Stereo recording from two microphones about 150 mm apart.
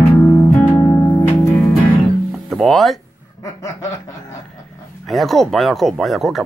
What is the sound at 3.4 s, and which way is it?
Snicker, 20° left (ahead or behind).